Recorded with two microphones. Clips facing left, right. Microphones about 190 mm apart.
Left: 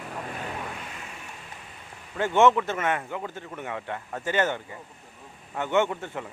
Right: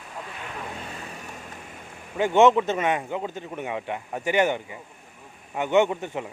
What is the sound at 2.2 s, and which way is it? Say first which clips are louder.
Speech: right 3 dB; 15° right (ahead or behind).